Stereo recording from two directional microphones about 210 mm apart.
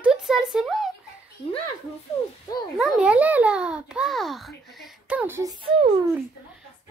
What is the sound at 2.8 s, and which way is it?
A child's voice, 5° right (ahead or behind).